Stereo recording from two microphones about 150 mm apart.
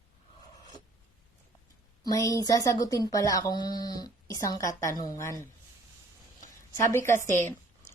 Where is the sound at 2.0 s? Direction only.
25° left (ahead or behind).